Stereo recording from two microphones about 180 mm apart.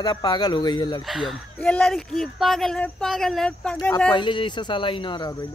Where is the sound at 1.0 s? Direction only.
Centre (ahead or behind).